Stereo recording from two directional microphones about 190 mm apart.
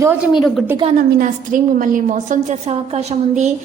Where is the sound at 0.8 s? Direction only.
30° right (ahead or behind).